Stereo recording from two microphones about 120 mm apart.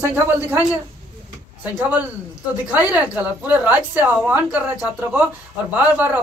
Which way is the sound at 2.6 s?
15° right (ahead or behind).